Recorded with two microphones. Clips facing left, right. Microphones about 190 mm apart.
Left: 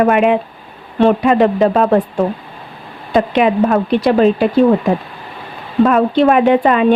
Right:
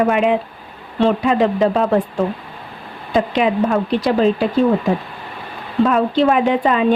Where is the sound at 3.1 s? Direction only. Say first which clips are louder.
Left 4 dB; 60° left (ahead or behind).